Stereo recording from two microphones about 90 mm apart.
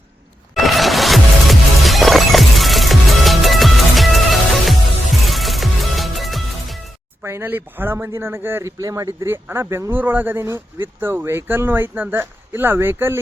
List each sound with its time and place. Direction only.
0.5 s music: centre (ahead or behind)
7.2 s speech: 25° right (ahead or behind)
8.8 s speech: 40° right (ahead or behind)